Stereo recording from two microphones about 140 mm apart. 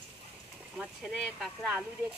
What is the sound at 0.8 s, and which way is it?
Speech, centre (ahead or behind).